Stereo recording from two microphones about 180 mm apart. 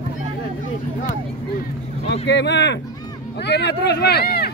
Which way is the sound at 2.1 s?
75° left (ahead or behind).